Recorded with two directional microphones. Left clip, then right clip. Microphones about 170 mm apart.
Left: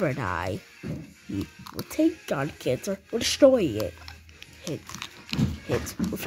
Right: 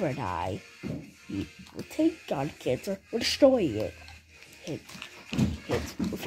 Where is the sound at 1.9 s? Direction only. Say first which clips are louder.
Left 3 dB; 10° left (ahead or behind).